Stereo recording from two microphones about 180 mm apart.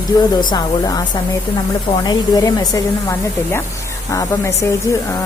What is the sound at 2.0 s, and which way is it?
Speech, 20° left (ahead or behind).